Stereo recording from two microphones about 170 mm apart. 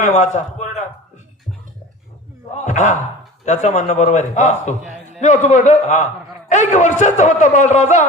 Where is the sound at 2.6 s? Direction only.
45° left (ahead or behind).